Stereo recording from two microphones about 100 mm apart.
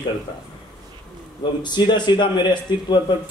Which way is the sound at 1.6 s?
50° left (ahead or behind).